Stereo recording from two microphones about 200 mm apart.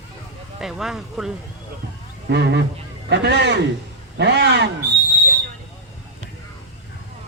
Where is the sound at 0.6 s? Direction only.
Centre (ahead or behind).